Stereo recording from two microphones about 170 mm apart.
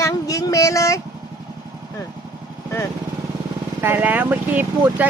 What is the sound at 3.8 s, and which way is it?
Speech, 10° right (ahead or behind).